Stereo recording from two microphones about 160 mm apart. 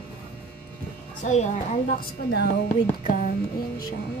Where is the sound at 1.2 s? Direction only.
50° left (ahead or behind).